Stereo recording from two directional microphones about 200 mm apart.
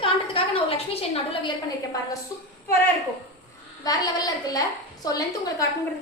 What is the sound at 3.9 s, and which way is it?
Speech, 20° left (ahead or behind).